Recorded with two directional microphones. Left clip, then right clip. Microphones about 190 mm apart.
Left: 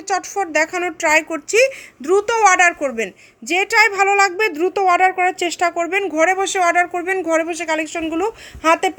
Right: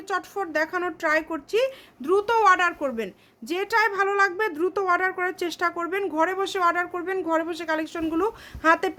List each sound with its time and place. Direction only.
0.1 s speech: 15° left (ahead or behind)
2.0 s a woman's voice: 10° left (ahead or behind)